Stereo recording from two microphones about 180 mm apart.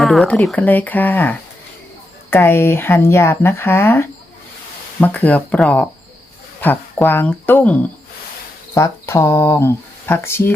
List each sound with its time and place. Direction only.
0.0 s speech: centre (ahead or behind)